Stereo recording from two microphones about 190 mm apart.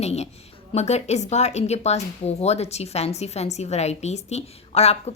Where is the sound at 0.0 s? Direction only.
35° left (ahead or behind).